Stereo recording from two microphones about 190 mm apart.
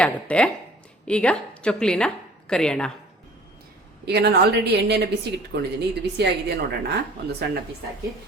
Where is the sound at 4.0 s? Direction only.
60° right (ahead or behind).